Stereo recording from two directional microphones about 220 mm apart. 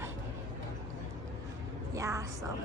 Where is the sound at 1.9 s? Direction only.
15° right (ahead or behind).